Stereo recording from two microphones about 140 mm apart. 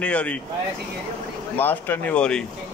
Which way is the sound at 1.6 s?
15° left (ahead or behind).